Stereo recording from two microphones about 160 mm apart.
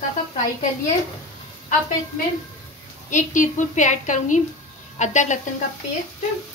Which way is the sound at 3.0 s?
50° left (ahead or behind).